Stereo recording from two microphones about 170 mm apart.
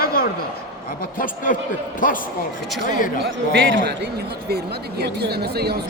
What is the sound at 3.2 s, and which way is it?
Speech, 90° right.